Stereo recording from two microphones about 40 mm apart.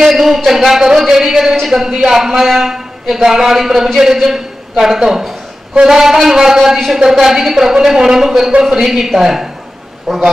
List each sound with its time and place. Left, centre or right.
0.0 s a man's voice: centre